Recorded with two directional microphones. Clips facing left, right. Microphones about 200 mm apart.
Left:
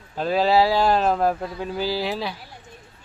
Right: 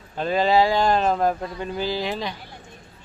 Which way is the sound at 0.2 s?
5° left (ahead or behind).